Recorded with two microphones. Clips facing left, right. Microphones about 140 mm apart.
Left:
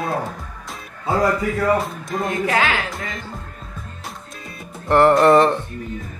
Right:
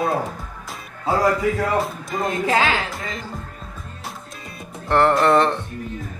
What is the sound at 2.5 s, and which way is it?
Speech, 25° right (ahead or behind).